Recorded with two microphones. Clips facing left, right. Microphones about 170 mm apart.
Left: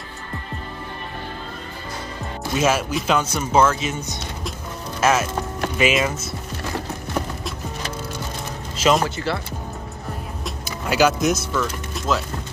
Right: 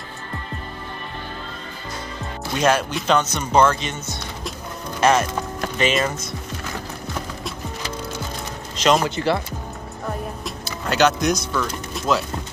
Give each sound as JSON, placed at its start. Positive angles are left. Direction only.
{"t": 2.5, "sound": "speech", "side_deg": 5}
{"t": 5.0, "sound": "speech", "side_deg": 5}
{"t": 8.7, "sound": "speech", "side_deg": 5}
{"t": 9.1, "sound": "speech", "side_deg": -15}
{"t": 10.6, "sound": "speech", "side_deg": 5}